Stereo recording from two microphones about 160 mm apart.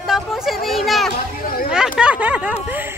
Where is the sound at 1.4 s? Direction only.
65° left (ahead or behind).